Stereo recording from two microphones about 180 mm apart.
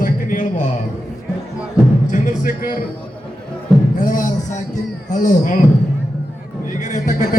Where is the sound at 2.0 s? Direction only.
45° left (ahead or behind).